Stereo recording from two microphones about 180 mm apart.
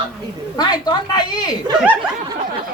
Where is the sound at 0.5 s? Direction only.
25° left (ahead or behind).